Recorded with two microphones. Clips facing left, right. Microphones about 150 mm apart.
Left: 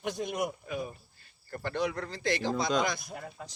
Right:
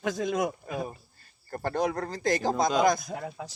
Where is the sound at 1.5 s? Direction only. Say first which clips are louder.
Right 4 dB; 40° right (ahead or behind).